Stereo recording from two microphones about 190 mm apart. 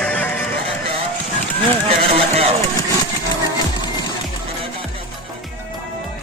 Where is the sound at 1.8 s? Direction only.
30° right (ahead or behind).